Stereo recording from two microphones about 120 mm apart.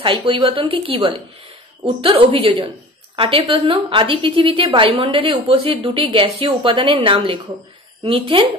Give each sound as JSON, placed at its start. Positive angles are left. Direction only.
{"t": 0.0, "sound": "a woman's voice", "side_deg": -45}